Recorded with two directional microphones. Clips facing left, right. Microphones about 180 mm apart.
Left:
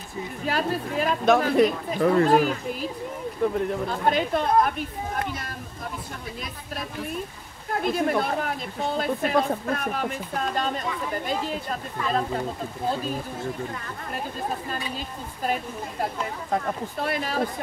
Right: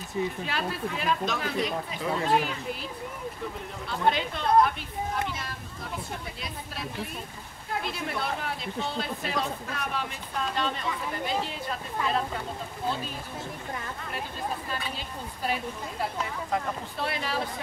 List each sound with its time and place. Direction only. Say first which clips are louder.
0.5 s speech: left 5 dB; 45° left (ahead or behind)
7.8 s speech: left 12 dB; 50° left (ahead or behind)
15.4 s speech: left 3 dB; 45° left (ahead or behind)